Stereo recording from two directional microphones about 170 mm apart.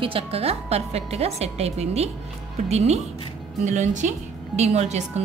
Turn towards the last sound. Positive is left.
turn(degrees=-40)  # may be behind; listen again after turning